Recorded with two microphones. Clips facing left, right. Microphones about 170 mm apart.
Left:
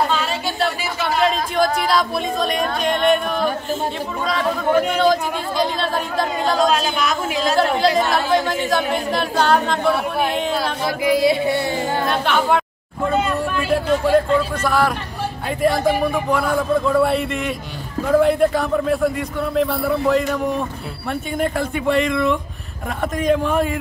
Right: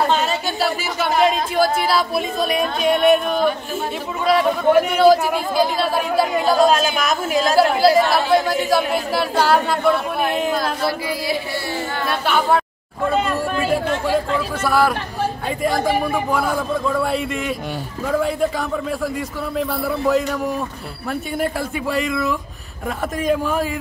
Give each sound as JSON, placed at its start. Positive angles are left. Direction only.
{"t": 0.6, "sound": "speech", "side_deg": -5}
{"t": 4.3, "sound": "speech", "side_deg": -5}
{"t": 7.0, "sound": "speech", "side_deg": -45}
{"t": 7.5, "sound": "speech", "side_deg": -5}
{"t": 10.5, "sound": "music", "side_deg": 20}
{"t": 12.3, "sound": "a sound", "side_deg": -5}
{"t": 14.1, "sound": "speech", "side_deg": -5}